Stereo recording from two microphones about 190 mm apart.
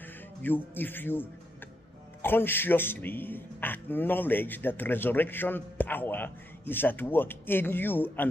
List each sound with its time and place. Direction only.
0.0 s a man's voice: 10° left (ahead or behind)
2.2 s a man's voice: 10° left (ahead or behind)